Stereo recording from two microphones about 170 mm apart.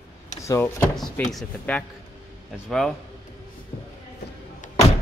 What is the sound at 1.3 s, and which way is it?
Speech, 5° left (ahead or behind).